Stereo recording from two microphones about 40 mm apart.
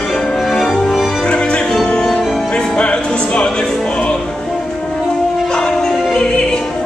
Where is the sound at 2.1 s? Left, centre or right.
Centre.